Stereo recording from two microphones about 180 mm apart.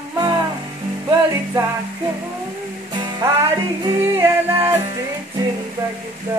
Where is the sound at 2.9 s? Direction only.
25° right (ahead or behind).